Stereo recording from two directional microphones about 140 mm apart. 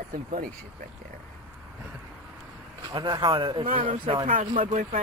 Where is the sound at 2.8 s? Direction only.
35° right (ahead or behind).